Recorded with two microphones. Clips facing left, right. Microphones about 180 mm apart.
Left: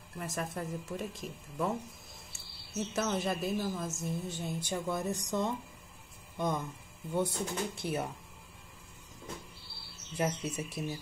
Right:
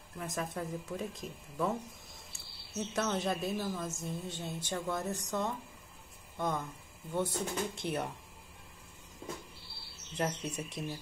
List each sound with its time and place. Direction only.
0.2 s speech: centre (ahead or behind)
2.8 s a woman's voice: 5° left (ahead or behind)
7.8 s speech: 5° left (ahead or behind)
10.1 s a woman's voice: 5° left (ahead or behind)